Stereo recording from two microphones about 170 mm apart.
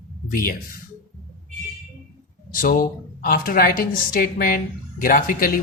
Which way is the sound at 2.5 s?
55° left (ahead or behind).